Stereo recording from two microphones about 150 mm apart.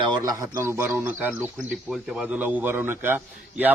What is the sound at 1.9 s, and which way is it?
A man's voice, 5° right (ahead or behind).